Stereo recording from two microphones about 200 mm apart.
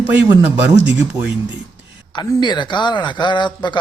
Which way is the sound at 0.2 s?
10° right (ahead or behind).